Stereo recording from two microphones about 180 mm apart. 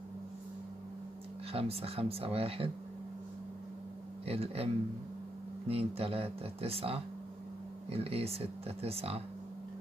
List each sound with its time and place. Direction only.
1.5 s speech: 35° right (ahead or behind)
4.3 s speech: 35° right (ahead or behind)
5.7 s speech: 35° right (ahead or behind)